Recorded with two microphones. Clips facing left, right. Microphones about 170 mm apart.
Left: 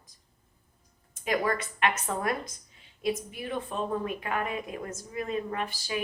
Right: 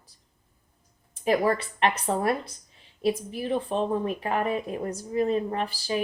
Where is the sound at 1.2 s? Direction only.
30° right (ahead or behind).